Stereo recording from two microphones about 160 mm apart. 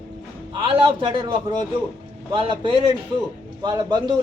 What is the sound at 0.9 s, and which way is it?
A man's voice, 30° right (ahead or behind).